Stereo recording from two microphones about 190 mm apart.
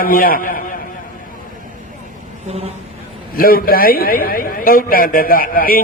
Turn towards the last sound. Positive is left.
turn(degrees=50)  # may be behind; listen again after turning